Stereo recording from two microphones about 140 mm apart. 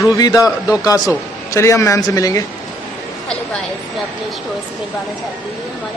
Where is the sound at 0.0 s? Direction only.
25° left (ahead or behind).